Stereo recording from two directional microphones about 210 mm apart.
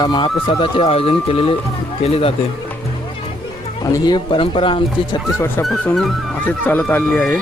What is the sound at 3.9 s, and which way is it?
Speech, 20° left (ahead or behind).